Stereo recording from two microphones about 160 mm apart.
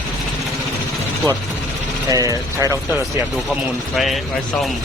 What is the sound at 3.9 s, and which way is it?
Speech, centre (ahead or behind).